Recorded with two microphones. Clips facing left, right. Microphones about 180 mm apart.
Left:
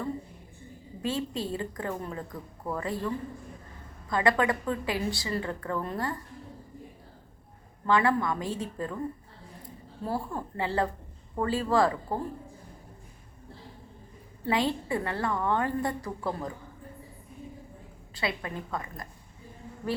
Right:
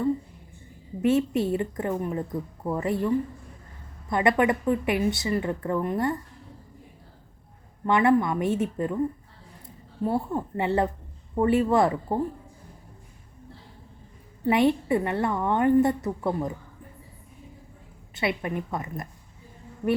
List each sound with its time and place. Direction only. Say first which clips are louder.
1.0 s a woman's voice: right 9 dB; 25° right (ahead or behind)
4.1 s a woman's voice: right 3 dB; 20° right (ahead or behind)
7.9 s a woman's voice: right 4 dB; 25° right (ahead or behind)
14.4 s a woman's voice: right 7 dB; 20° right (ahead or behind)
18.1 s a woman's voice: right 5 dB; 25° right (ahead or behind)